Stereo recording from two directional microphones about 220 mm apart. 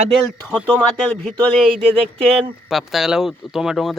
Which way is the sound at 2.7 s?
Centre (ahead or behind).